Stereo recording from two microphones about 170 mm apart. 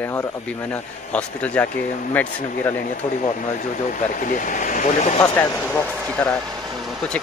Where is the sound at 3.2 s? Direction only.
50° left (ahead or behind).